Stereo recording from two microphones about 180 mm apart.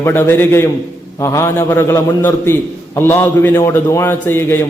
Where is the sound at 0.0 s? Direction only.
10° left (ahead or behind).